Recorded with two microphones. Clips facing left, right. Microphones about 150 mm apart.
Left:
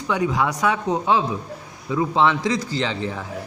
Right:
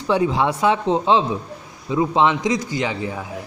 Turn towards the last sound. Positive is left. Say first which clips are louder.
# right 1 dB
turn(degrees=-10)  # may be behind; listen again after turning